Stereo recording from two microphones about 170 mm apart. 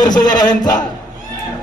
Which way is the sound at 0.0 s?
25° left (ahead or behind).